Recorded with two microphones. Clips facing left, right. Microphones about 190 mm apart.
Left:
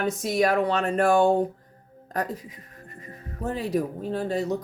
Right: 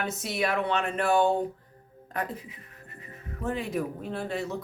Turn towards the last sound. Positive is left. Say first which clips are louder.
# left 6 dB
turn(degrees=35)  # may be behind; listen again after turning